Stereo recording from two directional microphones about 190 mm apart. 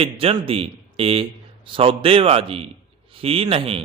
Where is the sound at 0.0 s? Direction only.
30° right (ahead or behind).